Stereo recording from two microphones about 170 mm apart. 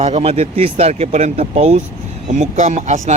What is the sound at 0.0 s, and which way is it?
Speech, 35° right (ahead or behind).